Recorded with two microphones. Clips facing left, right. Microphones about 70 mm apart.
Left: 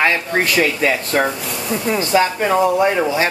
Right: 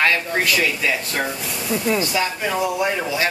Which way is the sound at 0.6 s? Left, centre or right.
Left.